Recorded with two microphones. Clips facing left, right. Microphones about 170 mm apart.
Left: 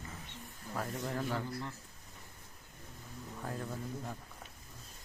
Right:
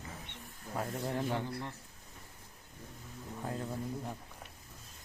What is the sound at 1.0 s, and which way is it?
Speech, 25° right (ahead or behind).